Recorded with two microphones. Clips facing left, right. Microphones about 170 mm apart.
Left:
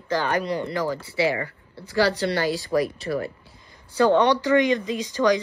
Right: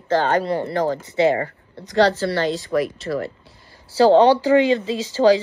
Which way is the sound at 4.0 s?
30° right (ahead or behind).